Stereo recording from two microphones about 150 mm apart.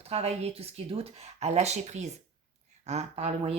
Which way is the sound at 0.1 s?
45° right (ahead or behind).